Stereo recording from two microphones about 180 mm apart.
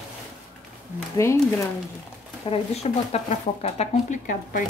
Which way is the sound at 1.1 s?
15° left (ahead or behind).